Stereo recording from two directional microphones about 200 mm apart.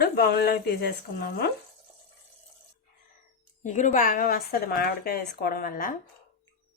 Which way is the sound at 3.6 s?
40° left (ahead or behind).